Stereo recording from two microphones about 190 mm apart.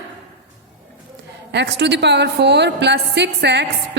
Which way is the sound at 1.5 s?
65° right (ahead or behind).